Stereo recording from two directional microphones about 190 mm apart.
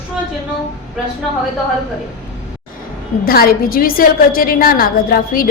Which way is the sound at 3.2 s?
50° left (ahead or behind).